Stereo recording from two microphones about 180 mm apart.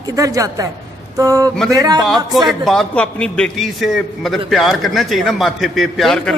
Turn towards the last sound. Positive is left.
turn(degrees=5)  # may be behind; listen again after turning